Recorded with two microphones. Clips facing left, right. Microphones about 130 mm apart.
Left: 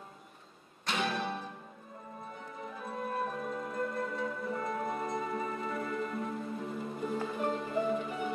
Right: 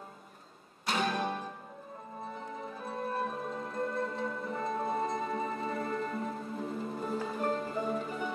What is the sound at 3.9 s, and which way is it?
Music, 25° right (ahead or behind).